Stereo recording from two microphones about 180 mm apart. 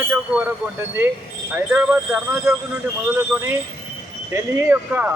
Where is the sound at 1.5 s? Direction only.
10° right (ahead or behind).